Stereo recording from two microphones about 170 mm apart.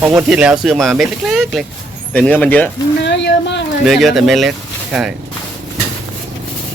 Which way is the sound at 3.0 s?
90° left.